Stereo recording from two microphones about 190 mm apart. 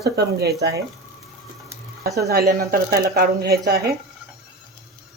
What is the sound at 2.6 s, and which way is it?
Speech, 50° right (ahead or behind).